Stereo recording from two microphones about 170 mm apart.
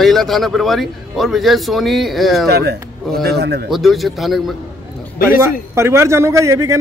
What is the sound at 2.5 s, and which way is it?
A man's voice, 70° right (ahead or behind).